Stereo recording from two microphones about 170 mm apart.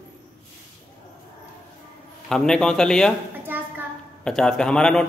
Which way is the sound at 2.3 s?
5° left (ahead or behind).